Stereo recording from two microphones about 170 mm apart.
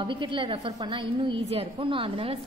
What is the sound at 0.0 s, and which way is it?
A woman's voice, 30° right (ahead or behind).